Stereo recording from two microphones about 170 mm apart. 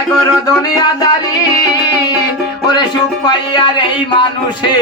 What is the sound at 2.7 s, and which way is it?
Speech, 25° left (ahead or behind).